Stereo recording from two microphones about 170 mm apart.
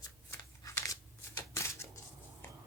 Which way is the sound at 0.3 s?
15° left (ahead or behind).